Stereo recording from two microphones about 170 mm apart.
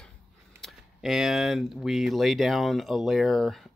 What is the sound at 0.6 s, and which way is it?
Speech, centre (ahead or behind).